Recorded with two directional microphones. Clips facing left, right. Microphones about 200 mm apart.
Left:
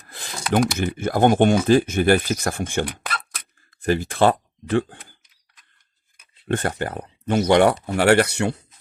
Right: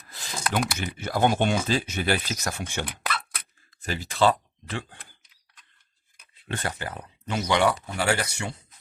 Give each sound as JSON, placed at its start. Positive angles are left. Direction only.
{"t": 0.1, "sound": "a sound", "side_deg": 55}
{"t": 0.5, "sound": "speech", "side_deg": 50}
{"t": 6.5, "sound": "speech", "side_deg": 50}